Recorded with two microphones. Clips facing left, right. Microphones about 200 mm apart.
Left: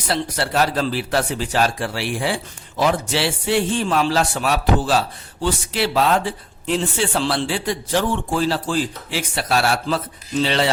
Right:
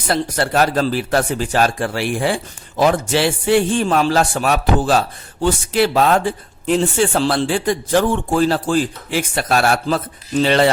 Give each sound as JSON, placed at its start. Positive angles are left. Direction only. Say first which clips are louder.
{"t": 0.1, "sound": "a man's voice", "louder": "right 4 dB", "side_deg": -50}